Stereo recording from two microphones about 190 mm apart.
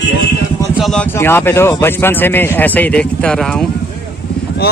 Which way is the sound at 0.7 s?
Centre (ahead or behind).